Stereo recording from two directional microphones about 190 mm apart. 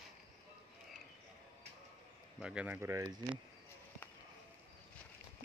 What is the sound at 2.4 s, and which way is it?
Speech, 5° right (ahead or behind).